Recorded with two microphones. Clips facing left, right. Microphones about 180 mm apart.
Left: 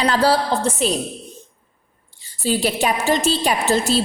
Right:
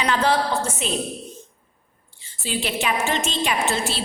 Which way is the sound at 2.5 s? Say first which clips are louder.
Left 5 dB; 40° left (ahead or behind).